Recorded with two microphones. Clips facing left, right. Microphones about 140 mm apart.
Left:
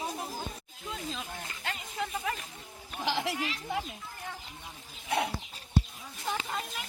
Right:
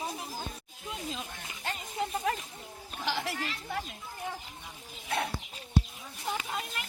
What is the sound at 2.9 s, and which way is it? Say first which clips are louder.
Speech: left 2 dB; 15° left (ahead or behind).